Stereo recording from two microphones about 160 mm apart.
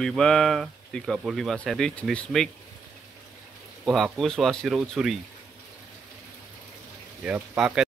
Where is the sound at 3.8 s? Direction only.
Centre (ahead or behind).